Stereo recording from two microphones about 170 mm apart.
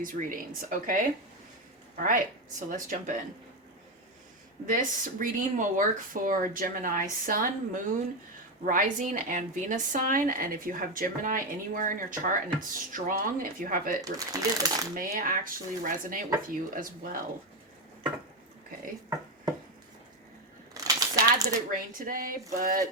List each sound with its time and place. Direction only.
0.0 s speech: 55° right (ahead or behind)
4.6 s speech: 55° right (ahead or behind)
14.0 s speech: 20° right (ahead or behind)
14.9 s speech: 55° right (ahead or behind)
20.7 s a sound: 20° right (ahead or behind)
21.7 s speech: 55° right (ahead or behind)